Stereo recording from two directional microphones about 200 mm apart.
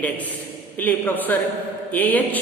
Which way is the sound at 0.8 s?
10° left (ahead or behind).